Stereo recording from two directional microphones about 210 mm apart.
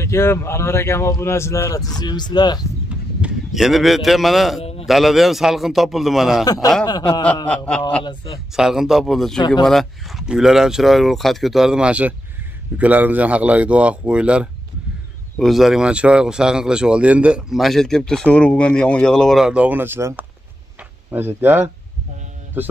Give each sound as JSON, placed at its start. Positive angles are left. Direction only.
{"t": 0.0, "sound": "a man's voice", "side_deg": 10}
{"t": 3.2, "sound": "speech", "side_deg": 0}
{"t": 4.6, "sound": "a sound", "side_deg": 30}
{"t": 4.8, "sound": "speech", "side_deg": 0}
{"t": 6.4, "sound": "a man's voice", "side_deg": 15}
{"t": 7.4, "sound": "speech", "side_deg": 5}
{"t": 8.0, "sound": "speech", "side_deg": 20}
{"t": 8.5, "sound": "speech", "side_deg": 0}